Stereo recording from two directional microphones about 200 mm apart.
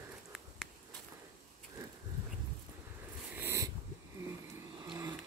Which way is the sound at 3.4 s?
10° right (ahead or behind).